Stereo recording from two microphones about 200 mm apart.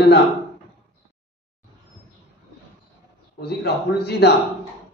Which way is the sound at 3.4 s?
55° left (ahead or behind).